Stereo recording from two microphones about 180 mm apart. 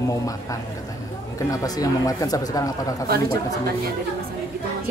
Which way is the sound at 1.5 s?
20° left (ahead or behind).